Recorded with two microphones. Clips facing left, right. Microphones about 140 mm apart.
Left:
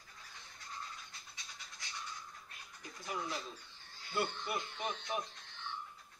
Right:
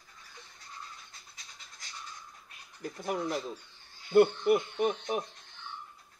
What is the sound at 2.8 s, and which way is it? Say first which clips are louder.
Speech: right 9 dB; 55° right (ahead or behind).